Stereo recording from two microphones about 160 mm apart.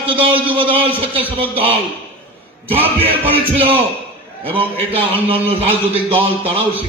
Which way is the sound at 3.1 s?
35° right (ahead or behind).